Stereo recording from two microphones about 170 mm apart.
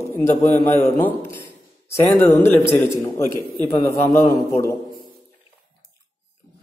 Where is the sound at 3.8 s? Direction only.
15° left (ahead or behind).